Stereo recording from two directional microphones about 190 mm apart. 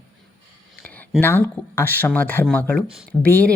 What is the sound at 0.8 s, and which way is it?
Speech, 5° left (ahead or behind).